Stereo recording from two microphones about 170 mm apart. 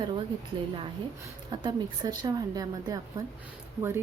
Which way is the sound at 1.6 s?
25° right (ahead or behind).